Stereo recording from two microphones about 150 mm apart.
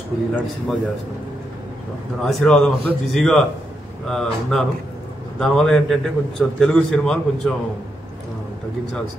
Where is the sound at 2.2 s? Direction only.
Centre (ahead or behind).